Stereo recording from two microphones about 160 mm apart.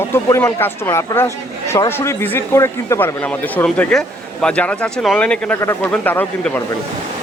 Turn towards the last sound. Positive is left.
turn(degrees=10)  # may be behind; listen again after turning